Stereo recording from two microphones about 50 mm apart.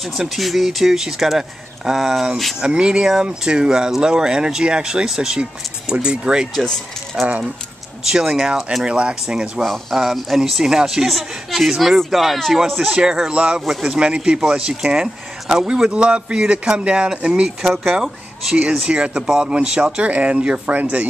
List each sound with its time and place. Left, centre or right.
0.2 s speech: centre
2.6 s a man's voice: centre
8.8 s a man's voice: right
9.6 s speech: centre
13.3 s a man's voice: centre
17.6 s a man's voice: centre